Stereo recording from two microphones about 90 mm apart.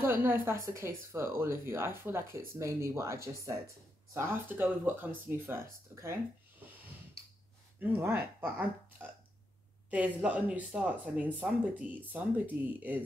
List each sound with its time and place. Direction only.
0.0 s speech: 25° right (ahead or behind)
7.8 s speech: 25° right (ahead or behind)
9.8 s speech: 15° right (ahead or behind)